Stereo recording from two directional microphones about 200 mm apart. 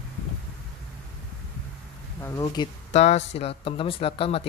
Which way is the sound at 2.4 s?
25° left (ahead or behind).